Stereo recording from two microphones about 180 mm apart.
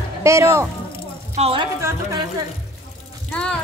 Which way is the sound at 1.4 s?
30° right (ahead or behind).